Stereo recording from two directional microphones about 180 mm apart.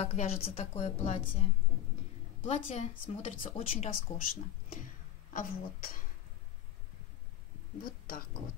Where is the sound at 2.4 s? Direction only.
35° left (ahead or behind).